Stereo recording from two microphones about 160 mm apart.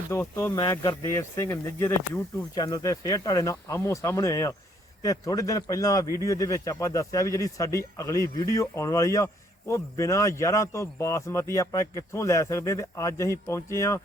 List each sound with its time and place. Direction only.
0.1 s speech: 15° left (ahead or behind)